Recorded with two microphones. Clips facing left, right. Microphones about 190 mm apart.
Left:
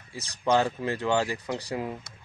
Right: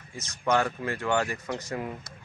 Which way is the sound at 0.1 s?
35° left (ahead or behind).